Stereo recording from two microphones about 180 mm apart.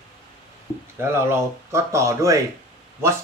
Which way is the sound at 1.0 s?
15° right (ahead or behind).